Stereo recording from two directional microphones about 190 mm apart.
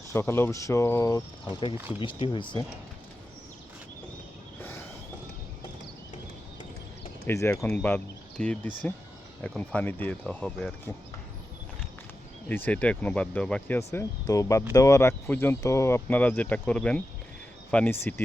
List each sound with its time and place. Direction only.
0.1 s speech: 15° left (ahead or behind)
7.3 s speech: 15° left (ahead or behind)
12.5 s speech: 10° left (ahead or behind)